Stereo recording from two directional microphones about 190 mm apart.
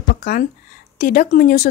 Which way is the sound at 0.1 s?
45° left (ahead or behind).